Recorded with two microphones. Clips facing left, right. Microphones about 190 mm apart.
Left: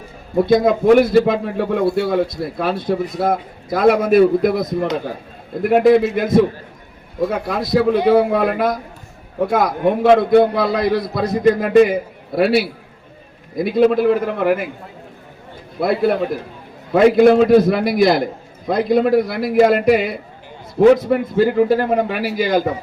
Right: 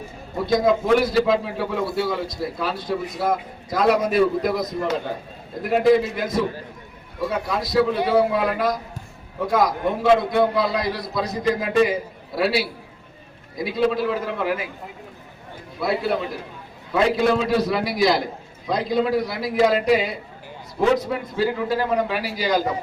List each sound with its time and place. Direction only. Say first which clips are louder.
0.4 s a man's voice: left 5 dB; 55° left (ahead or behind)
5.6 s a man's voice: left 5 dB; 60° left (ahead or behind)
15.8 s a man's voice: left 6 dB; 55° left (ahead or behind)